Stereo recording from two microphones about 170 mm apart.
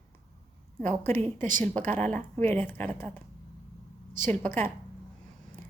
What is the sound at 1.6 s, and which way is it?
A woman's voice, 10° left (ahead or behind).